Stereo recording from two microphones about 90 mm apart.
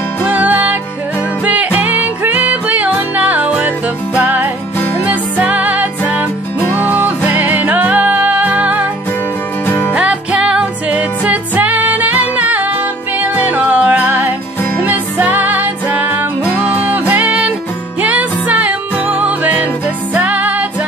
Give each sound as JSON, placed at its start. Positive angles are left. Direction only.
{"t": 0.2, "sound": "music", "side_deg": -15}
{"t": 6.6, "sound": "music", "side_deg": 25}
{"t": 6.9, "sound": "music", "side_deg": -20}
{"t": 9.9, "sound": "music", "side_deg": -15}